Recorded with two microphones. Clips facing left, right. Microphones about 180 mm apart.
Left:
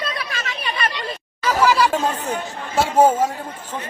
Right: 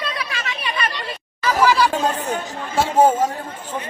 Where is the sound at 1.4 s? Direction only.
10° left (ahead or behind).